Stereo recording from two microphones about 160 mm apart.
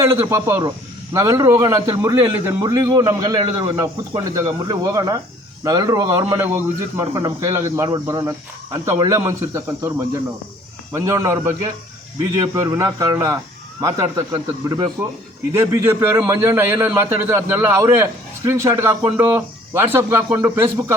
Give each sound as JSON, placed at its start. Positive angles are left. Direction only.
{"t": 0.0, "sound": "a man's voice", "side_deg": -15}
{"t": 10.9, "sound": "a man's voice", "side_deg": -20}